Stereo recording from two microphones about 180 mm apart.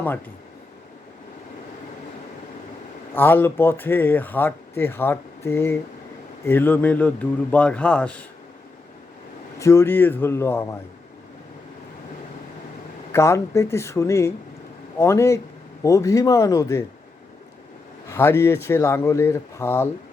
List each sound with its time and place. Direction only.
3.2 s speech: 10° left (ahead or behind)
9.6 s speech: 15° left (ahead or behind)
13.1 s speech: 15° left (ahead or behind)
18.1 s speech: 15° left (ahead or behind)